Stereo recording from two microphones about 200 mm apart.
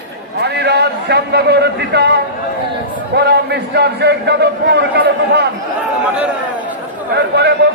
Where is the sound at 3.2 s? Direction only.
55° right (ahead or behind).